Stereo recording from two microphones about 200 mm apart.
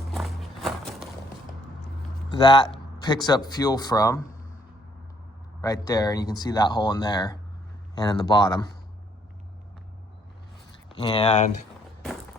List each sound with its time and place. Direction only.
0.1 s music: centre (ahead or behind)
2.3 s speech: 20° left (ahead or behind)
5.6 s speech: 20° left (ahead or behind)
11.0 s speech: 25° left (ahead or behind)